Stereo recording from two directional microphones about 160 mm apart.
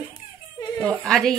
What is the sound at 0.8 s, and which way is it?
Speech, centre (ahead or behind).